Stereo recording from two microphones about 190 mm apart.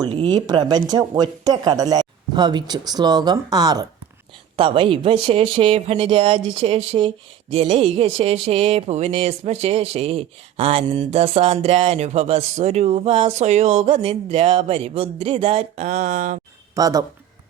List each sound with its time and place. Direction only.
0.0 s speech: 25° right (ahead or behind)
16.7 s speech: 20° right (ahead or behind)